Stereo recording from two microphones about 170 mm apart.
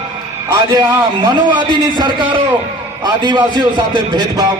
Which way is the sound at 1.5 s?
25° right (ahead or behind).